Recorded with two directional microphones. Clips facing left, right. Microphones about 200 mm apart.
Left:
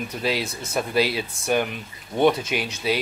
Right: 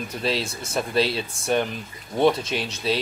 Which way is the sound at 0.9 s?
25° right (ahead or behind).